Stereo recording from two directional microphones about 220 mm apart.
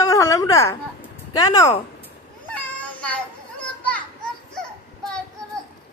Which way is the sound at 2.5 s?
5° left (ahead or behind).